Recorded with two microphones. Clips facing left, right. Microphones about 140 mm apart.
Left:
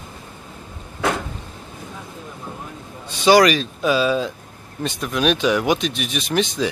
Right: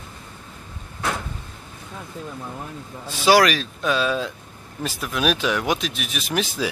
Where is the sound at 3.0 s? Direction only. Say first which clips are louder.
Left 3 dB; 5° right (ahead or behind).